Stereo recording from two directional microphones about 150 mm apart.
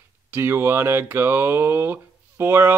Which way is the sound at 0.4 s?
15° right (ahead or behind).